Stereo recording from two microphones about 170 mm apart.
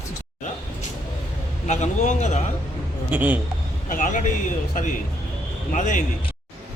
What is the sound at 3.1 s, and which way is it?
Speech, 10° right (ahead or behind).